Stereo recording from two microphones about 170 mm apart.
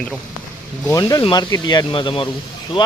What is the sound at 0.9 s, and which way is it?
Speech, 20° left (ahead or behind).